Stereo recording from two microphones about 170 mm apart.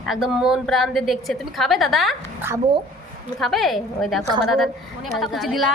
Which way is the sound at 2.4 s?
15° right (ahead or behind).